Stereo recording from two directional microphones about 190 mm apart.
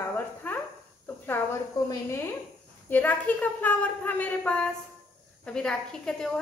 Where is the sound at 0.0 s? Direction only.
10° left (ahead or behind).